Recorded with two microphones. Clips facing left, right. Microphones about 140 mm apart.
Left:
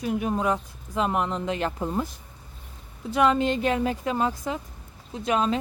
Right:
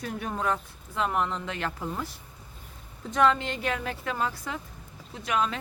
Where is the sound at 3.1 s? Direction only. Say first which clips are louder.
Left 3 dB; 15° left (ahead or behind).